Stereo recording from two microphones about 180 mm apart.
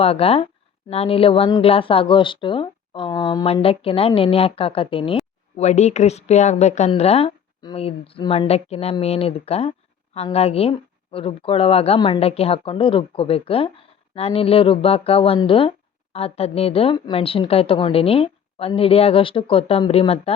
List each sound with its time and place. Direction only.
0.0 s a woman's voice: 35° left (ahead or behind)
3.4 s a woman's voice: 30° left (ahead or behind)